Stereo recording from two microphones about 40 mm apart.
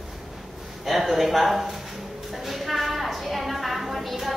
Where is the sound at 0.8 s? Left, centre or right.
Centre.